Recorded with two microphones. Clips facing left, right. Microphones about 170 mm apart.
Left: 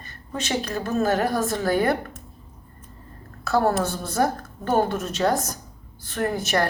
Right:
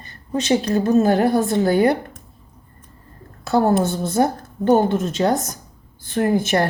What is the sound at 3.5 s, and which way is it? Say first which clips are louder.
A woman's voice: right 4 dB; 25° right (ahead or behind).